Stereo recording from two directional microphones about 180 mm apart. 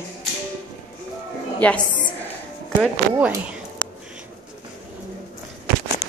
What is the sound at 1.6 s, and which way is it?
Speech, 10° left (ahead or behind).